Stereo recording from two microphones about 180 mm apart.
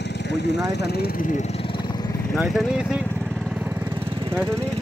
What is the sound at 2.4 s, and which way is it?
Vehicle, centre (ahead or behind).